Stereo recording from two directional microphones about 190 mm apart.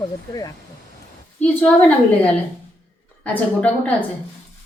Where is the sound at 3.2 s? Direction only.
10° left (ahead or behind).